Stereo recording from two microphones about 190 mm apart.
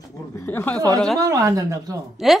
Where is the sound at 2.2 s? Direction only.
Centre (ahead or behind).